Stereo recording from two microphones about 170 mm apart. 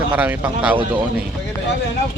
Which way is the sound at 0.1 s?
10° right (ahead or behind).